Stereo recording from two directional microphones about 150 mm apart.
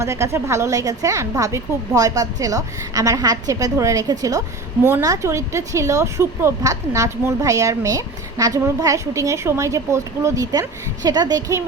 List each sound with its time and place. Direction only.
0.0 s a woman's voice: 20° right (ahead or behind)